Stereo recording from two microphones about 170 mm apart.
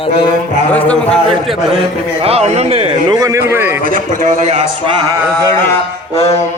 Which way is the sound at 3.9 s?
55° right (ahead or behind).